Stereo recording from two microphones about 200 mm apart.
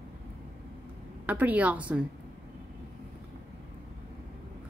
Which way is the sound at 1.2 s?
10° right (ahead or behind).